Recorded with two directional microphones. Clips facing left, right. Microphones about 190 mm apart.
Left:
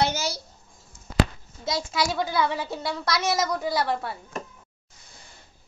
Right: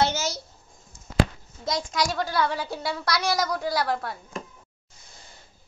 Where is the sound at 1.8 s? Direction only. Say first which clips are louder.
Left 1 dB; 5° left (ahead or behind).